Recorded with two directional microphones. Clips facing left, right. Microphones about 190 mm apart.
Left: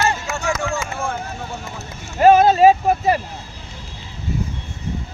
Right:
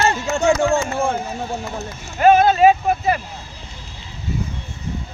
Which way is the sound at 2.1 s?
35° left (ahead or behind).